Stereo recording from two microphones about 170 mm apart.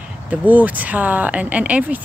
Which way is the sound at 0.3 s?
10° right (ahead or behind).